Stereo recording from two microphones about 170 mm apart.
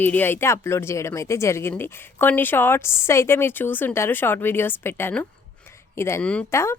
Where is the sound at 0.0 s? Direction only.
10° left (ahead or behind).